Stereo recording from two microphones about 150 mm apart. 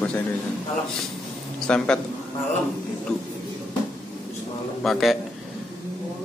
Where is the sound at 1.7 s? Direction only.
5° left (ahead or behind).